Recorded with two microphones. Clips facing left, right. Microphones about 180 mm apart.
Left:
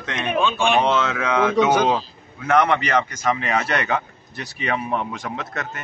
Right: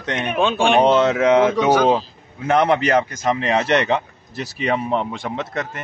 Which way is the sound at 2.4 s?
30° right (ahead or behind).